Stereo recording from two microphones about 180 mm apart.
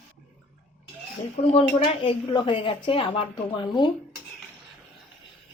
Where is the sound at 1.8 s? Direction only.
30° left (ahead or behind).